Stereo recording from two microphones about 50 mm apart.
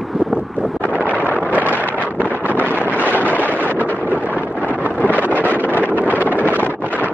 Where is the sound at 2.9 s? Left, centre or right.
Right.